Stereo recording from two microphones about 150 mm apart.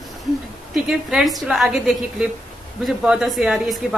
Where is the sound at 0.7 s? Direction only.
5° right (ahead or behind).